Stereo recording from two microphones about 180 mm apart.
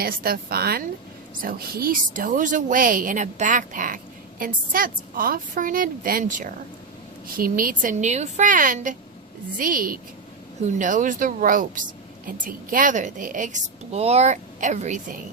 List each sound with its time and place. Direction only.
0.0 s a woman's voice: 55° right (ahead or behind)